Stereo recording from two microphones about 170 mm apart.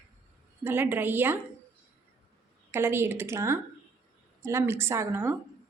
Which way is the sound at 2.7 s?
15° right (ahead or behind).